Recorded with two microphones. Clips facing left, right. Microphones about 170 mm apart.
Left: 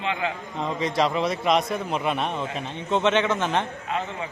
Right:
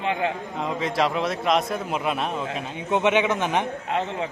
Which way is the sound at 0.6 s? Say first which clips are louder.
Even; 5° right (ahead or behind).